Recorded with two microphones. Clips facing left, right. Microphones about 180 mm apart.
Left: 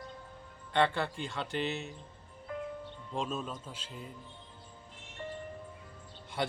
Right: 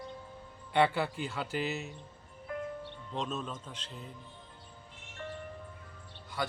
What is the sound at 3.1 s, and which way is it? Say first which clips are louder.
Speech: left 1 dB; 10° left (ahead or behind).